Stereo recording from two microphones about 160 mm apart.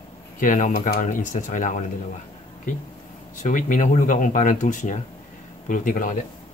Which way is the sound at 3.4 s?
55° left (ahead or behind).